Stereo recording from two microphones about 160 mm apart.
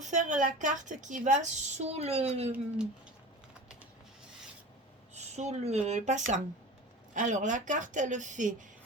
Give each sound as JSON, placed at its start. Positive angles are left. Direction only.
{"t": 0.0, "sound": "a woman's voice", "side_deg": -50}
{"t": 5.1, "sound": "a woman's voice", "side_deg": -45}